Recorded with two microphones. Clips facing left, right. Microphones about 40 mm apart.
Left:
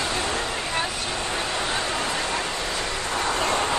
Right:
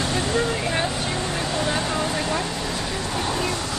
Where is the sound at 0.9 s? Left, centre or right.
Centre.